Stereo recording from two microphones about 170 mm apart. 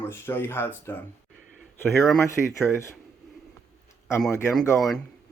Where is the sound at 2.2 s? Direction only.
15° left (ahead or behind).